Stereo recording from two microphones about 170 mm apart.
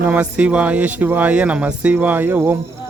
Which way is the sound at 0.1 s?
10° right (ahead or behind).